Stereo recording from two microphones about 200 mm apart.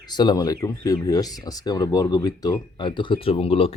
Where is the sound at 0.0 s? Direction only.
20° left (ahead or behind).